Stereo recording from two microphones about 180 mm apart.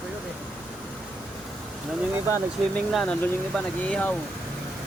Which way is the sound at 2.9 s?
Centre (ahead or behind).